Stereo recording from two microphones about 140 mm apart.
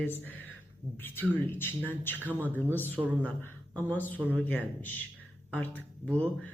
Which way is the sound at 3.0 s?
20° right (ahead or behind).